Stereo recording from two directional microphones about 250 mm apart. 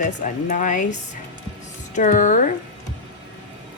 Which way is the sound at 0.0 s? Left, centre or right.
Left.